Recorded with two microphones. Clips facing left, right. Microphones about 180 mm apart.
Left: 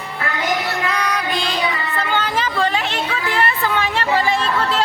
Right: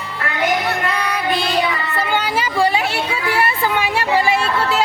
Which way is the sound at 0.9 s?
Centre (ahead or behind).